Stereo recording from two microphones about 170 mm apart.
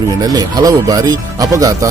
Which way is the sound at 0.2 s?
20° right (ahead or behind).